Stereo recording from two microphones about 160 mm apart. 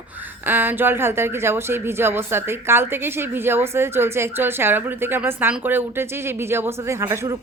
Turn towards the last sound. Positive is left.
turn(degrees=-15)  # may be behind; listen again after turning